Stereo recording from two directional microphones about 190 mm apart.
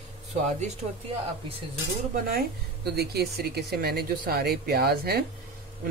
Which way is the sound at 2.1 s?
50° right (ahead or behind).